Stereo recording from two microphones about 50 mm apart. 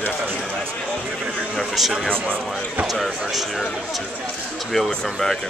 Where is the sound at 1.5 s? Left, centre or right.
Centre.